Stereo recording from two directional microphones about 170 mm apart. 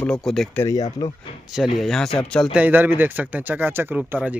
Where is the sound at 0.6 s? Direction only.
20° left (ahead or behind).